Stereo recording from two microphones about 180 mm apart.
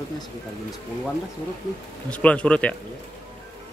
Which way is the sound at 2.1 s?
5° left (ahead or behind).